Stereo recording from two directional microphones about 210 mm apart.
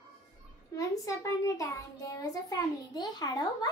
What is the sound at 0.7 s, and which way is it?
A child's voice, 15° left (ahead or behind).